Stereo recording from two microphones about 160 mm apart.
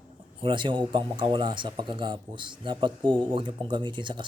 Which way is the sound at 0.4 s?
30° right (ahead or behind).